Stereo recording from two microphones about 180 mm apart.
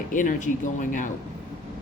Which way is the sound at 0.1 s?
45° left (ahead or behind).